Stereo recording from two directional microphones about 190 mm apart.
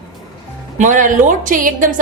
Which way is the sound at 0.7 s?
40° right (ahead or behind).